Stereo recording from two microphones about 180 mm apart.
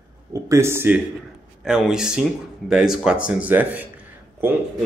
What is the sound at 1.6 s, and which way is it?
A man's voice, centre (ahead or behind).